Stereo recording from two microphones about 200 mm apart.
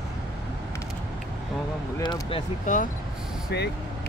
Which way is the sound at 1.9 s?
15° left (ahead or behind).